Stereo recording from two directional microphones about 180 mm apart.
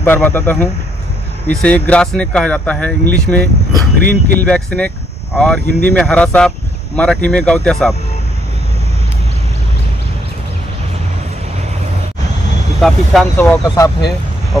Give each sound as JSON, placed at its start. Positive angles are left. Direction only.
{"t": 0.0, "sound": "speech", "side_deg": 10}
{"t": 4.0, "sound": "speech", "side_deg": -65}
{"t": 4.4, "sound": "speech", "side_deg": 5}
{"t": 12.8, "sound": "speech", "side_deg": 0}
{"t": 13.4, "sound": "speech", "side_deg": 15}